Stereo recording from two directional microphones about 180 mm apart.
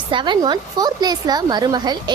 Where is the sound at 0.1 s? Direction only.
25° right (ahead or behind).